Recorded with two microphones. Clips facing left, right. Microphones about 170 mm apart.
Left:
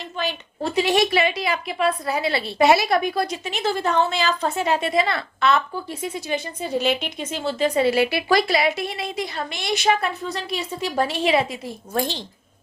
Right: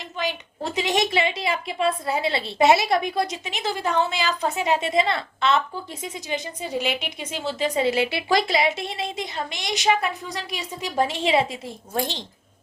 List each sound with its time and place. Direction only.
0.0 s a woman's voice: 15° right (ahead or behind)